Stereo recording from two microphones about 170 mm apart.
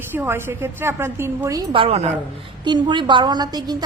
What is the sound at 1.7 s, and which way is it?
Speech, 35° right (ahead or behind).